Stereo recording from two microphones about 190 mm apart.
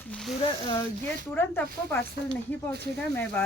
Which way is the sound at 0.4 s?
20° left (ahead or behind).